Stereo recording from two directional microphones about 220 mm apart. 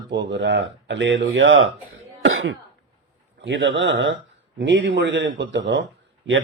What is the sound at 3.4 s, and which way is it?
A man's voice, 55° right (ahead or behind).